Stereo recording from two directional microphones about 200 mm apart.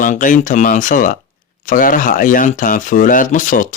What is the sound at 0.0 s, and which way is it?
Speech, 40° left (ahead or behind).